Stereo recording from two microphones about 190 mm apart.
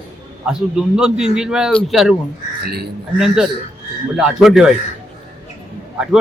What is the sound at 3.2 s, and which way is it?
Speech, centre (ahead or behind).